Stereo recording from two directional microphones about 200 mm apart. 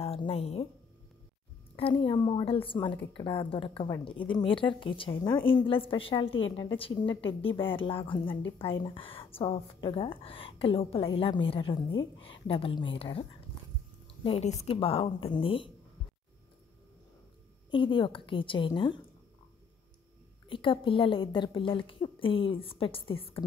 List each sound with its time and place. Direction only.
0.0 s speech: 30° left (ahead or behind)
1.8 s a woman's voice: 25° left (ahead or behind)
14.2 s a woman's voice: 30° left (ahead or behind)
17.6 s a woman's voice: 25° left (ahead or behind)
20.4 s a woman's voice: 25° left (ahead or behind)